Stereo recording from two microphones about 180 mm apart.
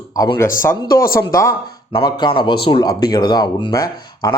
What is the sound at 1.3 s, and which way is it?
A man's voice, 15° left (ahead or behind).